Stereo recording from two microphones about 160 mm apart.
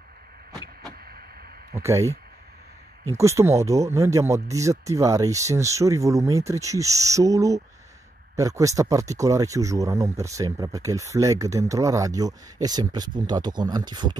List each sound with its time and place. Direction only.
1.7 s speech: 20° right (ahead or behind)